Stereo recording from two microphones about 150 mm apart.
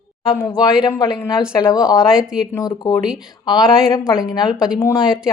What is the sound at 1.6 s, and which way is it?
Speech, 25° left (ahead or behind).